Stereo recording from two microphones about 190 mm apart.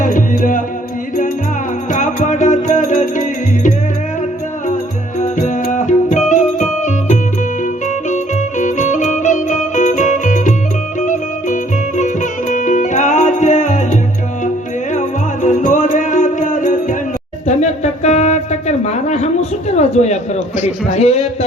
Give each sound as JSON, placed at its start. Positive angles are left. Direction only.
{"t": 0.0, "sound": "music", "side_deg": 45}
{"t": 1.9, "sound": "music", "side_deg": 40}
{"t": 5.2, "sound": "music", "side_deg": 40}
{"t": 8.1, "sound": "music", "side_deg": 40}
{"t": 18.9, "sound": "a sound", "side_deg": 35}